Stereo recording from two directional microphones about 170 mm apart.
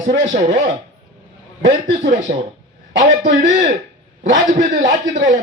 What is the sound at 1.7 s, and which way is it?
A man's voice, 50° right (ahead or behind).